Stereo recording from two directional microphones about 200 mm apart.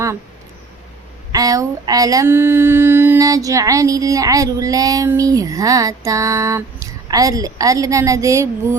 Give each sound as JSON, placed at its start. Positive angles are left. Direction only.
{"t": 1.3, "sound": "child singing", "side_deg": -20}